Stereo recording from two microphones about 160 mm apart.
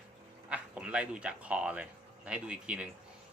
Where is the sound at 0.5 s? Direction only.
5° right (ahead or behind).